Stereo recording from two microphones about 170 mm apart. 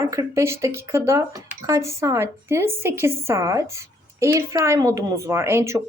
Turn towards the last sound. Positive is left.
turn(degrees=-15)  # may be behind; listen again after turning